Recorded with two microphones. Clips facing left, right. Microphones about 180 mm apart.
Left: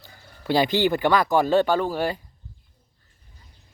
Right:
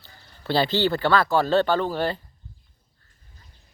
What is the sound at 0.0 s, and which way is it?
Speech, 15° left (ahead or behind).